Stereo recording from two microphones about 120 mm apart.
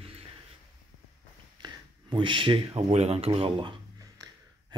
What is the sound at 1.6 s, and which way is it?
Speech, 40° right (ahead or behind).